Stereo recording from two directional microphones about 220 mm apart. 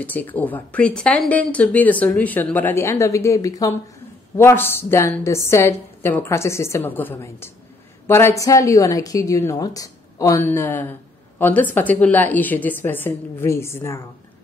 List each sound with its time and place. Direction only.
0.0 s speech: 10° left (ahead or behind)